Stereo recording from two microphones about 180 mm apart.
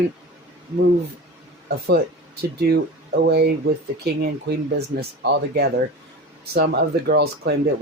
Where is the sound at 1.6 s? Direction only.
60° right (ahead or behind).